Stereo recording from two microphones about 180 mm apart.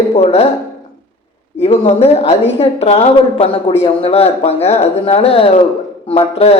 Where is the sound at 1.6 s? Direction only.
35° left (ahead or behind).